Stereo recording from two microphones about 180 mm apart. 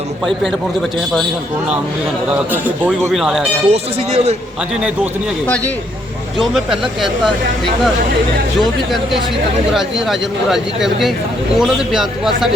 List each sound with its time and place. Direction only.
2.5 s a man's voice: 10° right (ahead or behind)
3.7 s speech: 35° right (ahead or behind)
6.4 s speech: centre (ahead or behind)
9.7 s speech: centre (ahead or behind)